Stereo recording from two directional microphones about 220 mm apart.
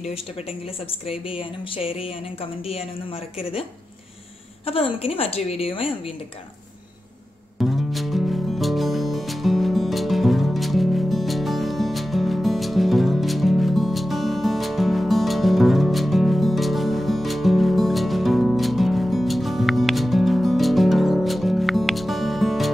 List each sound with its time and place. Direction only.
0.1 s speech: 25° left (ahead or behind)
4.9 s speech: 25° left (ahead or behind)
7.5 s music: centre (ahead or behind)